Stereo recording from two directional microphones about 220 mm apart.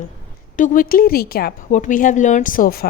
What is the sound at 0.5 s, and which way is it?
A woman's voice, 35° left (ahead or behind).